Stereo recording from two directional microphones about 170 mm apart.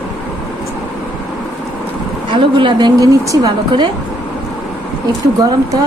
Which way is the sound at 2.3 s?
30° right (ahead or behind).